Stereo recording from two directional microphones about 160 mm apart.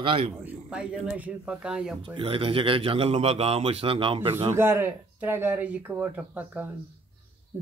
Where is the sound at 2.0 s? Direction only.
35° right (ahead or behind).